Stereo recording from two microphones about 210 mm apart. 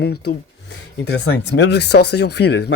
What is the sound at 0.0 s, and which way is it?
Speech, 50° left (ahead or behind).